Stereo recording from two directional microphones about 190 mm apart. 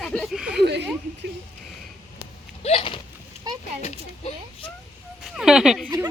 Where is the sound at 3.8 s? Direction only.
35° left (ahead or behind).